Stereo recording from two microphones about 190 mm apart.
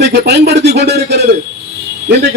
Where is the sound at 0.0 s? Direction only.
60° right (ahead or behind).